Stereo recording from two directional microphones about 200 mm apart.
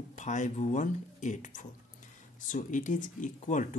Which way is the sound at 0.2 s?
40° left (ahead or behind).